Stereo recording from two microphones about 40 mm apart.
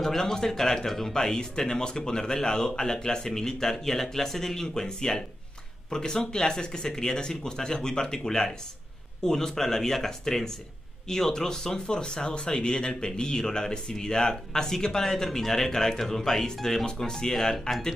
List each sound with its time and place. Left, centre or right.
0.0 s speech: centre